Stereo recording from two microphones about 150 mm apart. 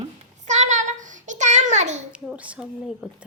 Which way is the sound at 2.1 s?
10° right (ahead or behind).